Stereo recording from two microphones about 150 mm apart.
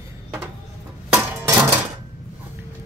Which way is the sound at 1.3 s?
10° right (ahead or behind).